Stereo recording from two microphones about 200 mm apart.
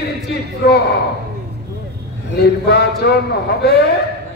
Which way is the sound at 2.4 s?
55° left (ahead or behind).